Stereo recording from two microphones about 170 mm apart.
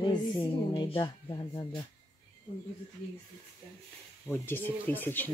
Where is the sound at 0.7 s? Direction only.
25° left (ahead or behind).